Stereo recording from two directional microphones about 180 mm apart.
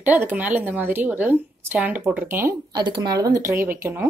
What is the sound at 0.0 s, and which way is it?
Speech, 10° right (ahead or behind).